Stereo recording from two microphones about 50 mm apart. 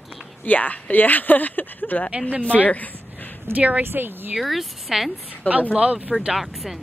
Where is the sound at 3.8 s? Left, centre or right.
Right.